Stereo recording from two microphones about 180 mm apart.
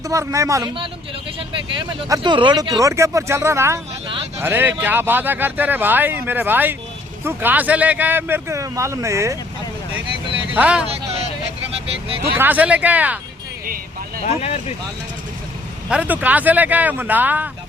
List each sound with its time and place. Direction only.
0.1 s speech: 15° right (ahead or behind)
2.0 s speech: 20° right (ahead or behind)
10.5 s speech: 5° right (ahead or behind)
12.4 s speech: 10° right (ahead or behind)
14.3 s speech: 35° left (ahead or behind)
15.9 s speech: 10° right (ahead or behind)